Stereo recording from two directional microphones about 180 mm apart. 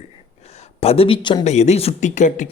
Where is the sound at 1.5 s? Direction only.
40° left (ahead or behind).